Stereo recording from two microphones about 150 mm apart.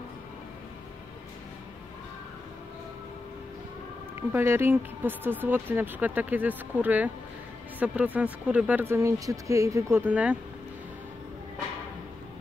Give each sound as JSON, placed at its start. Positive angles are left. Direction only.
{"t": 4.1, "sound": "speech", "side_deg": -15}